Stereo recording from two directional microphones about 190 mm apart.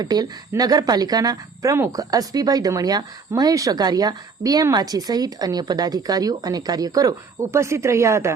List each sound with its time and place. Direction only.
0.0 s speech: 20° right (ahead or behind)